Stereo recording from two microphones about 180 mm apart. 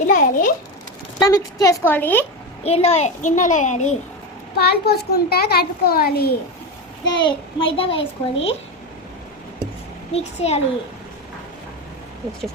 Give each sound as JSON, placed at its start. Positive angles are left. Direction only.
{"t": 0.1, "sound": "a child's voice", "side_deg": 50}
{"t": 1.2, "sound": "a woman's voice", "side_deg": 20}
{"t": 2.6, "sound": "a child's voice", "side_deg": 35}
{"t": 4.5, "sound": "a child's voice", "side_deg": 60}
{"t": 7.0, "sound": "a child's voice", "side_deg": 25}
{"t": 10.1, "sound": "a child's voice", "side_deg": 35}